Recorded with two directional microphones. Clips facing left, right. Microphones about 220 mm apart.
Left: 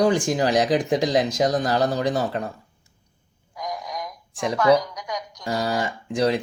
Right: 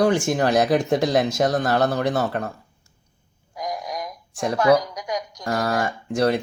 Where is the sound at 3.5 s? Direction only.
35° right (ahead or behind).